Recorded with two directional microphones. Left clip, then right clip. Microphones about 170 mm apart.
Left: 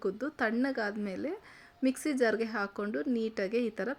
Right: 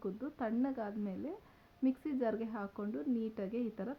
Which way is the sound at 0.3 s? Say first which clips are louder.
Left 5 dB; 20° left (ahead or behind).